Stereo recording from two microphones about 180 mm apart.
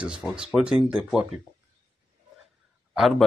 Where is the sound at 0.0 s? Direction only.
5° right (ahead or behind).